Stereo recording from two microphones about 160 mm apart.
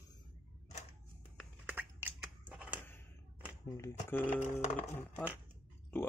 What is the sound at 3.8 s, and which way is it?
Speech, 20° left (ahead or behind).